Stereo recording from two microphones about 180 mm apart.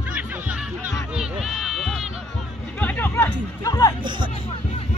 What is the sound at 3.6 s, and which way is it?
Music, 20° left (ahead or behind).